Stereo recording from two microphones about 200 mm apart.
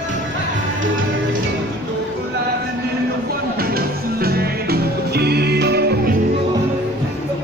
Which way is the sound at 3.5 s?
50° right (ahead or behind).